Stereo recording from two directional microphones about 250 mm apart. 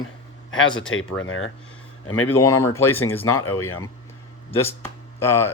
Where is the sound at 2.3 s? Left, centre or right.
Centre.